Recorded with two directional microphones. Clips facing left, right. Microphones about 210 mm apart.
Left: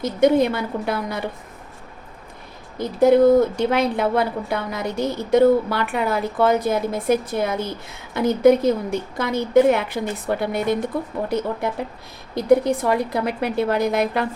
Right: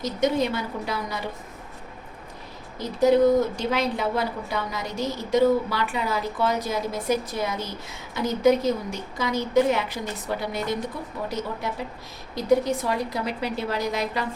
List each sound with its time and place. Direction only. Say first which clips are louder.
0.0 s a woman's voice: left 7 dB; 55° left (ahead or behind)
2.7 s a woman's voice: left 4 dB; 55° left (ahead or behind)
12.3 s a woman's voice: left 5 dB; 55° left (ahead or behind)